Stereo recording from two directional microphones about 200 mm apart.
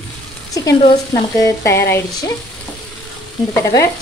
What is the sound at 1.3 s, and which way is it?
Speech, 15° left (ahead or behind).